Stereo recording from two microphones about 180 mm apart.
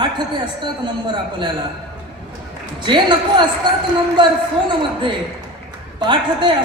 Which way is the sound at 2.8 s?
25° right (ahead or behind).